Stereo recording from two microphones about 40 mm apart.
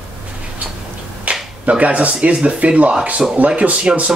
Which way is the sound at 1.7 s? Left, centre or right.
Right.